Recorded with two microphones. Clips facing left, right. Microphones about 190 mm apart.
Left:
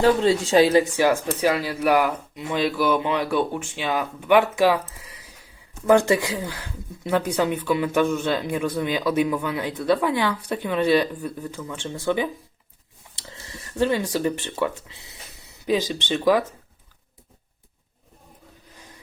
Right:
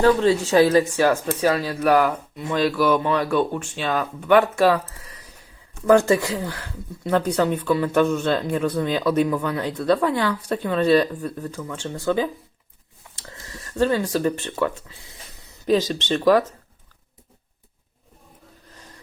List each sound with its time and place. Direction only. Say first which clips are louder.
0.0 s speech: right 1 dB; 20° left (ahead or behind)
13.2 s a sound: right 1 dB; 20° left (ahead or behind)
15.6 s speech: right 3 dB; 10° left (ahead or behind)